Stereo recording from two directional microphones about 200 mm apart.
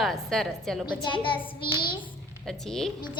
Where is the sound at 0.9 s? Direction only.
25° left (ahead or behind).